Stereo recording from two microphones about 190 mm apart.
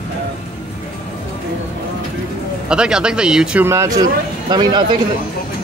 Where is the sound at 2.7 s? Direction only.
5° right (ahead or behind); by 4.8 s 20° right (ahead or behind).